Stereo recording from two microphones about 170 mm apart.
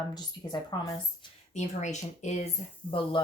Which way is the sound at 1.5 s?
45° left (ahead or behind).